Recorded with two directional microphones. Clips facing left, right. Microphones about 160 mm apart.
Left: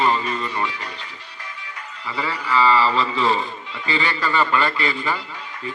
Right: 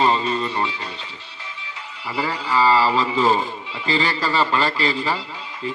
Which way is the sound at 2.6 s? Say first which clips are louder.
Even; 35° right (ahead or behind).